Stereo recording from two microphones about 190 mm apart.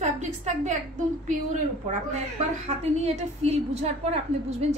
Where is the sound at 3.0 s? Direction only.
35° right (ahead or behind).